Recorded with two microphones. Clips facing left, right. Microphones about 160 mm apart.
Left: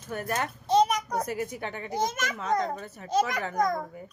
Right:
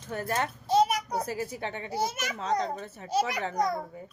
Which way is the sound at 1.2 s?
30° right (ahead or behind).